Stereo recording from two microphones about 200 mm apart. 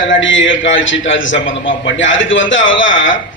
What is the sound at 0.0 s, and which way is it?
A man's voice, 70° left (ahead or behind).